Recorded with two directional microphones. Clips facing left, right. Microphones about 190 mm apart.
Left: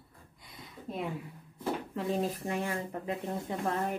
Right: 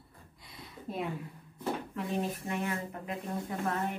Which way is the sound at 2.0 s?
30° left (ahead or behind).